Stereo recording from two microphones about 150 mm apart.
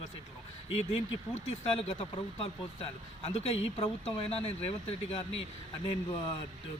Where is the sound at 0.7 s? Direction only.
45° left (ahead or behind).